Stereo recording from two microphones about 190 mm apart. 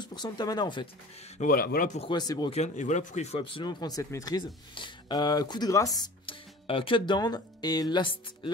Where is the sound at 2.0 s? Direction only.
20° left (ahead or behind).